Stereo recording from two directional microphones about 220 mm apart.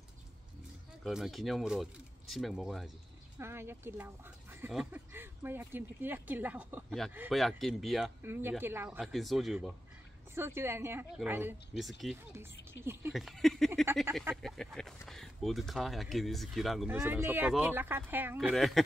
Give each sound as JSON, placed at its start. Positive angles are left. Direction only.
{"t": 1.0, "sound": "speech", "side_deg": 0}
{"t": 12.7, "sound": "speech", "side_deg": 50}
{"t": 13.1, "sound": "speech", "side_deg": 0}
{"t": 18.5, "sound": "speech", "side_deg": 0}